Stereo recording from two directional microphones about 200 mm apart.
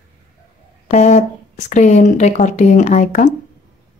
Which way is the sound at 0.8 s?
35° left (ahead or behind).